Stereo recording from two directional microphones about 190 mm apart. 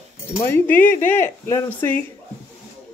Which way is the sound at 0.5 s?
10° left (ahead or behind).